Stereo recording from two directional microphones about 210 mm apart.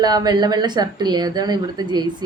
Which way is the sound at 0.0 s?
20° right (ahead or behind).